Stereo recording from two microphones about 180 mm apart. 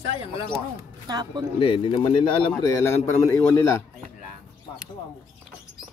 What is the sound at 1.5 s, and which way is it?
Speech, 30° left (ahead or behind).